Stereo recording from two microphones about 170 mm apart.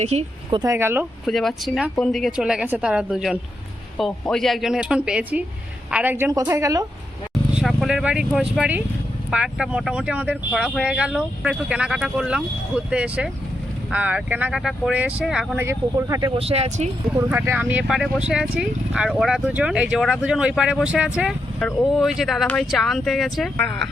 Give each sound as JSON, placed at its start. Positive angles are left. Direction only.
{"t": 0.0, "sound": "speech", "side_deg": -40}
{"t": 0.6, "sound": "a woman's voice", "side_deg": -15}
{"t": 1.2, "sound": "a woman's voice", "side_deg": 0}
{"t": 7.5, "sound": "a woman's voice", "side_deg": 0}
{"t": 15.6, "sound": "a woman's voice", "side_deg": -15}
{"t": 16.4, "sound": "speech", "side_deg": -35}
{"t": 17.2, "sound": "a woman's voice", "side_deg": -15}